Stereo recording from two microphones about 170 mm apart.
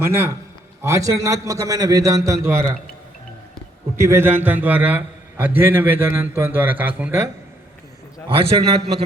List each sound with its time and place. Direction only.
0.0 s a man's voice: 15° right (ahead or behind)
3.9 s a man's voice: 15° right (ahead or behind)
8.3 s a man's voice: 30° right (ahead or behind)